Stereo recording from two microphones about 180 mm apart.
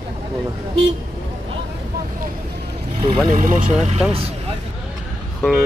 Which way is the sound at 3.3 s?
45° right (ahead or behind).